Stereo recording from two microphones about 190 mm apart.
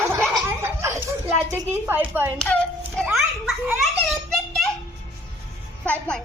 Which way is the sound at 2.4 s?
5° left (ahead or behind).